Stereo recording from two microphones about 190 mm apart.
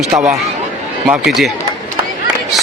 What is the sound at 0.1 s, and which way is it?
A man's voice, 5° right (ahead or behind).